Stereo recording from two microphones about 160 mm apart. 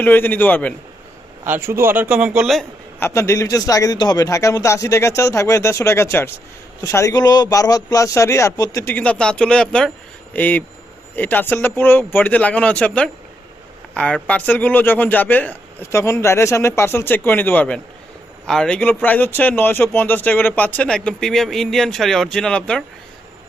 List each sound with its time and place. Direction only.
0.0 s speech: 10° left (ahead or behind)
1.5 s a man's voice: 15° right (ahead or behind)
3.0 s a man's voice: 15° left (ahead or behind)